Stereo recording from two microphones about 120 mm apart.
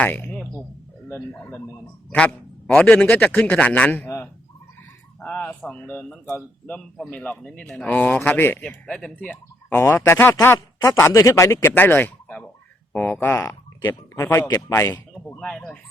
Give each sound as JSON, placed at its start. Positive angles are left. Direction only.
{"t": 0.0, "sound": "a man's voice", "side_deg": 10}
{"t": 2.0, "sound": "a man's voice", "side_deg": 10}
{"t": 6.7, "sound": "speech", "side_deg": 5}
{"t": 15.4, "sound": "speech", "side_deg": 5}